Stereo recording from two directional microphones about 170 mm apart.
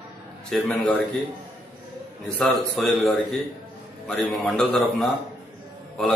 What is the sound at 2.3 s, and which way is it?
A man's voice, centre (ahead or behind).